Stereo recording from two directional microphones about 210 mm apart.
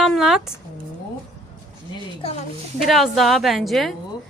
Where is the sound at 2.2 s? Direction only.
30° left (ahead or behind).